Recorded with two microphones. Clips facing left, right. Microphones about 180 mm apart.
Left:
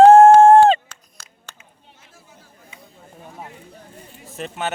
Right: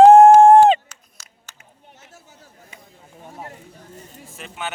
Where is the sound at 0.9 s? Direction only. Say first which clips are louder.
Left 3 dB; 60° left (ahead or behind).